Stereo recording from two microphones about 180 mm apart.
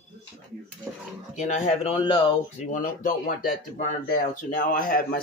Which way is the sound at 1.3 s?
40° left (ahead or behind).